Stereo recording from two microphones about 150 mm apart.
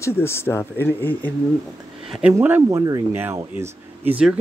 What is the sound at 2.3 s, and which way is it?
Speech, 15° right (ahead or behind).